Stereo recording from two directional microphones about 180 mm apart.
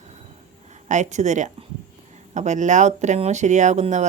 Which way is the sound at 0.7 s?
40° right (ahead or behind).